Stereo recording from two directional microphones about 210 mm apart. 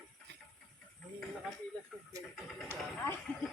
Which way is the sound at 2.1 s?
15° right (ahead or behind).